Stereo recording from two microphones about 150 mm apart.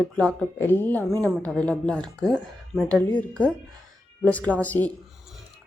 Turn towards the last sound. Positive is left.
turn(degrees=10)  # may be behind; listen again after turning